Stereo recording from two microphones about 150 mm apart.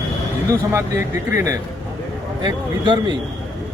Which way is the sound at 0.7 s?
20° right (ahead or behind).